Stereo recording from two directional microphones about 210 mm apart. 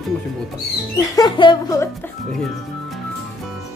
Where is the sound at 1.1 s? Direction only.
20° left (ahead or behind).